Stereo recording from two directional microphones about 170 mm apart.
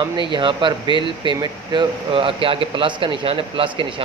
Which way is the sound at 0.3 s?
30° right (ahead or behind).